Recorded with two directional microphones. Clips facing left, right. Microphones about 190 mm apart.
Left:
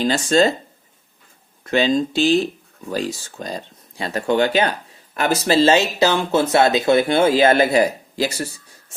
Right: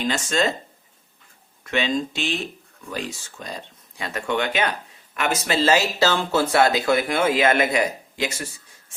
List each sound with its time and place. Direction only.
0.0 s speech: 35° left (ahead or behind)
1.6 s speech: 35° left (ahead or behind)